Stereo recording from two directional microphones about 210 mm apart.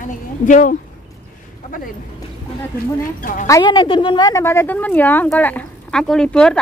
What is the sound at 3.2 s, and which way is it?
Speech, 40° left (ahead or behind).